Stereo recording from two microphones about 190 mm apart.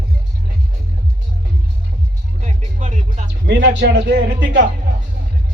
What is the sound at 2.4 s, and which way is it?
Music, 35° right (ahead or behind).